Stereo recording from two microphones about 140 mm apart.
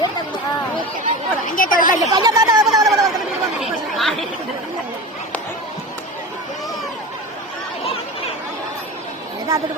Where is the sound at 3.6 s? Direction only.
Centre (ahead or behind).